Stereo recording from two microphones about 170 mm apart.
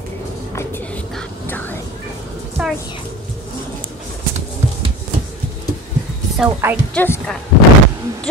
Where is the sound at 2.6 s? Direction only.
5° right (ahead or behind).